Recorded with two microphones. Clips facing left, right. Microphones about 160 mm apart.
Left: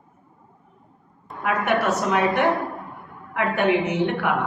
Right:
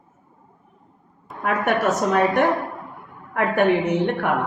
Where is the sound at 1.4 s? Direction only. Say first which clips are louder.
Right 1 dB; 45° right (ahead or behind).